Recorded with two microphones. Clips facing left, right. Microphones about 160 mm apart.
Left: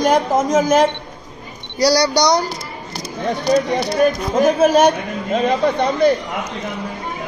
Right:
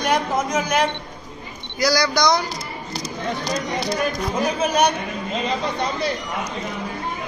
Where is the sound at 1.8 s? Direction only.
30° left (ahead or behind).